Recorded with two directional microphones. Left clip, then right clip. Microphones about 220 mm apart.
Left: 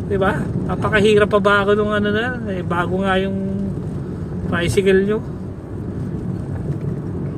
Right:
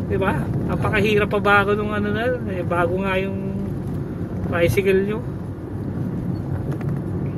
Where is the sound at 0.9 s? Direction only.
25° left (ahead or behind).